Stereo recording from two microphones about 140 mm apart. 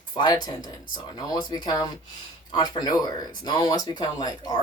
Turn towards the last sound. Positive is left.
turn(degrees=30)  # may be behind; listen again after turning